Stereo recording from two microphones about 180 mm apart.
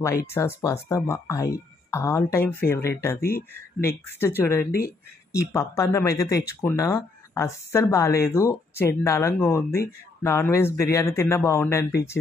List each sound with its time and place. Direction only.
0.3 s speech: 15° left (ahead or behind)